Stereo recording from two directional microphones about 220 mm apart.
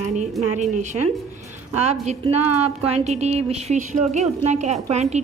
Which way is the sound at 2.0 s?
30° right (ahead or behind).